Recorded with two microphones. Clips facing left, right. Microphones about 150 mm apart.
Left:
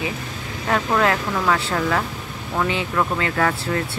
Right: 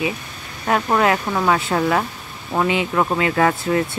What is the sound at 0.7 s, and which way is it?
Speech, 10° right (ahead or behind).